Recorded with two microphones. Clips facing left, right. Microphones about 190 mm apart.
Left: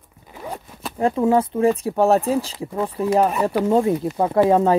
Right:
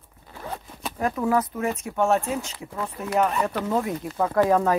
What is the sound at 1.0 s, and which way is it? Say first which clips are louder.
Speech: left 6 dB; 25° left (ahead or behind).